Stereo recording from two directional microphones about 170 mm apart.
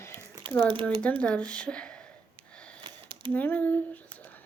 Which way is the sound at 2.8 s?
25° right (ahead or behind).